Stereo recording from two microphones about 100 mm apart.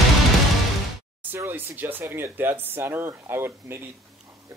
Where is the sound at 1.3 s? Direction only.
25° right (ahead or behind).